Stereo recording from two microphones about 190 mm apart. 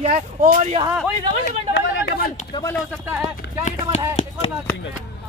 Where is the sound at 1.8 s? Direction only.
70° left (ahead or behind).